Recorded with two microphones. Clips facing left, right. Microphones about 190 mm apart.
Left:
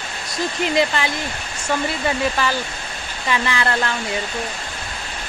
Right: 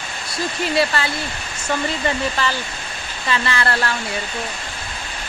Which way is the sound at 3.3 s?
15° left (ahead or behind).